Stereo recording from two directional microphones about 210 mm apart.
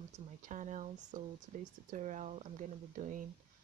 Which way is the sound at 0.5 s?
35° right (ahead or behind).